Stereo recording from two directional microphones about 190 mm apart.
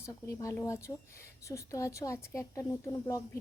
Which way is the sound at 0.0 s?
15° left (ahead or behind).